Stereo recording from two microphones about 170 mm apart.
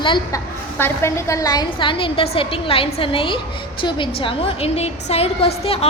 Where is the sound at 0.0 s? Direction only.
25° left (ahead or behind).